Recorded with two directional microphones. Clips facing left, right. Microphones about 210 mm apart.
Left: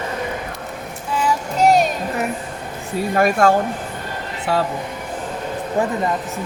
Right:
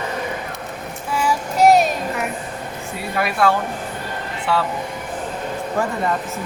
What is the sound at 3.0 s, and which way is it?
A woman's voice, 45° left (ahead or behind).